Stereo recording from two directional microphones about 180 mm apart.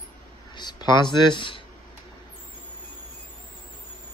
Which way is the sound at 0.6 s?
25° left (ahead or behind).